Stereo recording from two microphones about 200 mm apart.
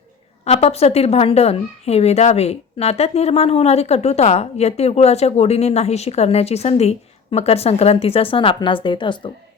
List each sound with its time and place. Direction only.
0.4 s a woman's voice: 30° left (ahead or behind)